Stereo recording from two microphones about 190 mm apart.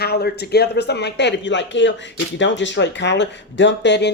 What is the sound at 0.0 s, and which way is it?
Speech, 55° left (ahead or behind).